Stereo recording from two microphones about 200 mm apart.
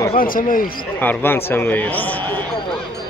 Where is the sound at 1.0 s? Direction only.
10° left (ahead or behind).